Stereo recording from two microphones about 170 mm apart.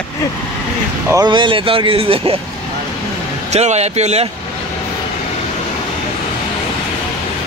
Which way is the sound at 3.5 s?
40° right (ahead or behind).